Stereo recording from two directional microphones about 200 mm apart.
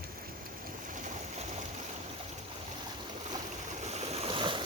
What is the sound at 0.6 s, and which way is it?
Boat, 40° right (ahead or behind).